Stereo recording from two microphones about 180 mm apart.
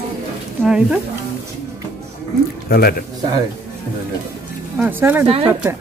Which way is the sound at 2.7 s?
55° left (ahead or behind).